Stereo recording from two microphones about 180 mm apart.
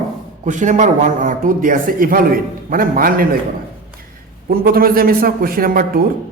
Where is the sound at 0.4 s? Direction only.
45° right (ahead or behind).